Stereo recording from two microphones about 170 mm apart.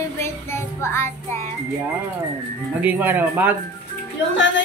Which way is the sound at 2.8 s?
10° right (ahead or behind).